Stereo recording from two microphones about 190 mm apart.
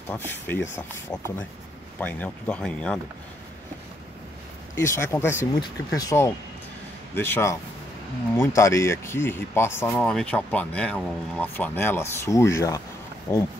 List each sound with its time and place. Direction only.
0.1 s speech: 10° left (ahead or behind)
4.7 s speech: 15° left (ahead or behind)
8.5 s speech: 15° left (ahead or behind)